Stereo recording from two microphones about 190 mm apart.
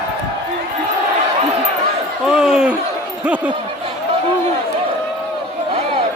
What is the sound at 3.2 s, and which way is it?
Speech, 5° right (ahead or behind).